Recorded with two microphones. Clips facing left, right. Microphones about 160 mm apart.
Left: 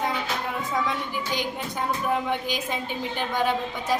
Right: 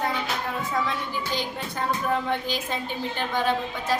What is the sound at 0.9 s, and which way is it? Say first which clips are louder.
A woman's voice: left 1 dB; 15° left (ahead or behind).